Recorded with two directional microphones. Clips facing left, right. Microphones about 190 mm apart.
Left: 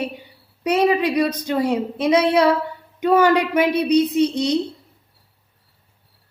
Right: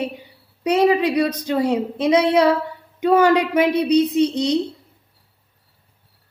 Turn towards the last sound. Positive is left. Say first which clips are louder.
# even
turn(degrees=-25)  # may be behind; listen again after turning